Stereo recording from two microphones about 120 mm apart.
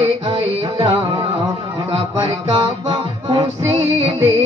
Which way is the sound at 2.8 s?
40° right (ahead or behind).